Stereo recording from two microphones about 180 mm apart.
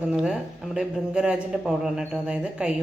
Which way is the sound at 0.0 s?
5° right (ahead or behind).